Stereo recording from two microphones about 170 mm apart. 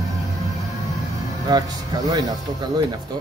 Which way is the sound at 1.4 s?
25° right (ahead or behind).